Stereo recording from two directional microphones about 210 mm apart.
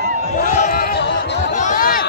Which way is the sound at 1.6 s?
40° left (ahead or behind).